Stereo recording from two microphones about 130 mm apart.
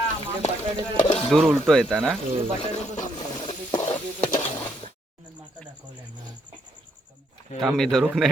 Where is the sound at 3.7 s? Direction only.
35° left (ahead or behind).